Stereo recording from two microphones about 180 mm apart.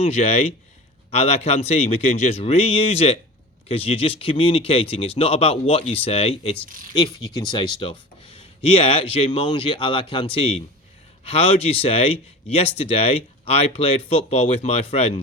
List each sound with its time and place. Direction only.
0.0 s speech: 35° left (ahead or behind)
6.9 s speech: 20° left (ahead or behind)
9.1 s speech: 30° left (ahead or behind)